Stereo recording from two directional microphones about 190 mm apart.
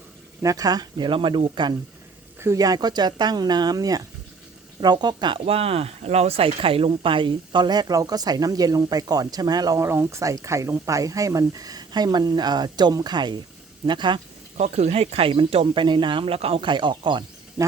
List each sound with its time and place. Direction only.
0.4 s speech: 20° right (ahead or behind)
2.4 s speech: 15° right (ahead or behind)
14.6 s speech: 35° right (ahead or behind)